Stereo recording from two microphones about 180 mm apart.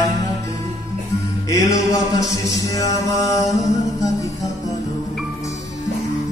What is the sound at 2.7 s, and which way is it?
Music, 20° left (ahead or behind).